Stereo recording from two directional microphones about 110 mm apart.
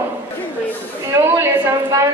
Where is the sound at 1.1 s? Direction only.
20° right (ahead or behind).